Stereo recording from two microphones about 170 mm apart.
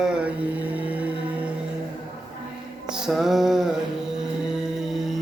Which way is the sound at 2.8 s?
5° right (ahead or behind).